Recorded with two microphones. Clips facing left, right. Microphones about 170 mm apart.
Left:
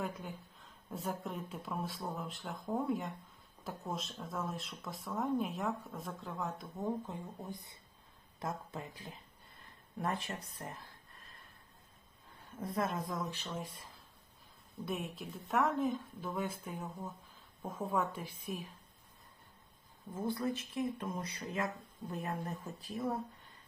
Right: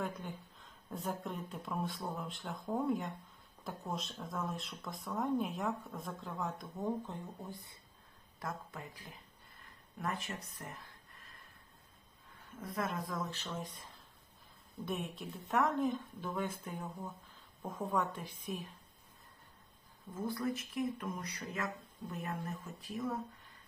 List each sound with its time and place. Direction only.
0.0 s speech: 5° left (ahead or behind)
7.4 s speech: 20° left (ahead or behind)
12.5 s speech: 30° left (ahead or behind); by 18.7 s 5° left (ahead or behind)
20.1 s speech: 30° left (ahead or behind)